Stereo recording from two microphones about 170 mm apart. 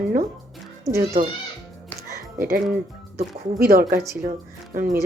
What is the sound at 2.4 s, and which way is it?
Speech, 60° right (ahead or behind).